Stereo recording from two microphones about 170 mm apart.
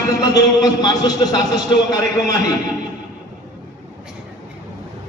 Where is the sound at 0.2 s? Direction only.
20° left (ahead or behind).